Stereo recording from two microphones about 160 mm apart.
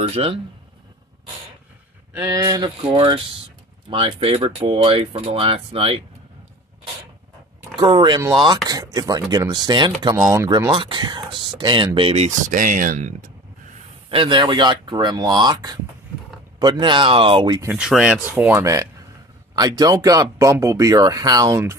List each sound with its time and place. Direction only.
0.0 s speech: 35° right (ahead or behind)
2.1 s speech: 20° right (ahead or behind)
2.8 s speech: 30° right (ahead or behind)
7.7 s speech: 30° right (ahead or behind)
12.4 s speech: 55° right (ahead or behind)
14.0 s speech: 30° right (ahead or behind)
17.7 s speech: 5° right (ahead or behind)